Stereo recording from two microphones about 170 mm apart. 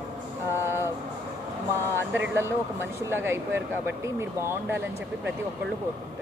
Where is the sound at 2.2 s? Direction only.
15° right (ahead or behind).